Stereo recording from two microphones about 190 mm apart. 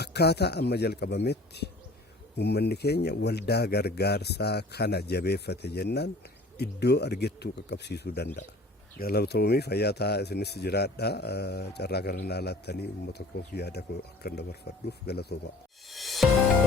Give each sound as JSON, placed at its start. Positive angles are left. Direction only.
{"t": 0.0, "sound": "speech", "side_deg": 60}
{"t": 15.9, "sound": "music", "side_deg": 0}